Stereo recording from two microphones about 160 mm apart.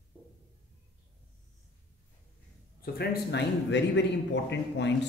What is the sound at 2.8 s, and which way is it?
A man's voice, 85° left.